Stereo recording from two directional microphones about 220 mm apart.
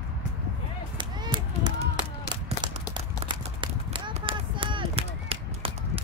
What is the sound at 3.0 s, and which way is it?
Run, 20° right (ahead or behind).